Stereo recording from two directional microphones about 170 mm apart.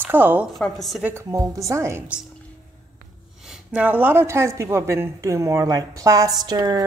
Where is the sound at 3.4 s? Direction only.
5° right (ahead or behind).